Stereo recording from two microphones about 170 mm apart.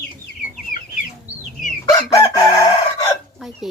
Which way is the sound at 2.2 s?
20° left (ahead or behind).